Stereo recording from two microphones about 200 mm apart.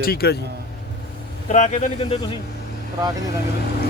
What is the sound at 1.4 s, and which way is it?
Speech, 35° left (ahead or behind).